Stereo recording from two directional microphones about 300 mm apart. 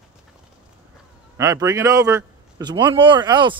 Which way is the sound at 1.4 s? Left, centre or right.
Centre.